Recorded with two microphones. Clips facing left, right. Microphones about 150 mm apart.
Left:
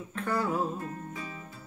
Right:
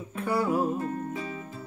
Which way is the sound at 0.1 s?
10° right (ahead or behind).